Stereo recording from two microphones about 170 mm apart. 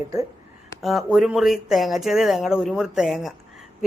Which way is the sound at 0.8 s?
Centre (ahead or behind).